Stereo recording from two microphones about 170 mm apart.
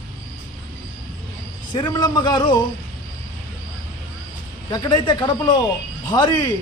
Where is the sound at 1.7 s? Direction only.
20° left (ahead or behind).